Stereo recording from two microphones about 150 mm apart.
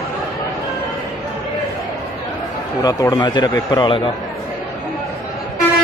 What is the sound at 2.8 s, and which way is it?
A man's voice, 25° left (ahead or behind).